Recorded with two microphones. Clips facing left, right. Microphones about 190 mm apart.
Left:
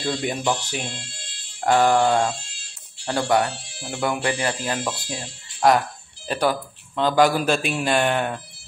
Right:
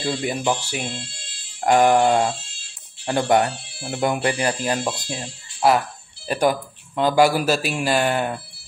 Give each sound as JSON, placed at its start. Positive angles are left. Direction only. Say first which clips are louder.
{"t": 0.0, "sound": "speech", "louder": "right 1 dB", "side_deg": -5}
{"t": 5.6, "sound": "a man's voice", "louder": "even", "side_deg": -5}